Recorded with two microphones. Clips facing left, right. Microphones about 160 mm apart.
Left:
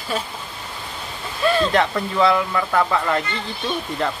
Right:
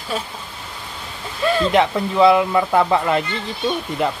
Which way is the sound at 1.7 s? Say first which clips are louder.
Right 3 dB; 20° right (ahead or behind).